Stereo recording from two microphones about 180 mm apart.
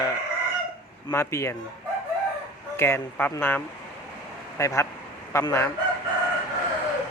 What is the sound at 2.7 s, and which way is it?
Speech, 15° left (ahead or behind).